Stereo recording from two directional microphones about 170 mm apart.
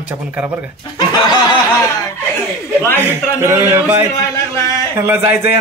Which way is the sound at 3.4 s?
15° right (ahead or behind).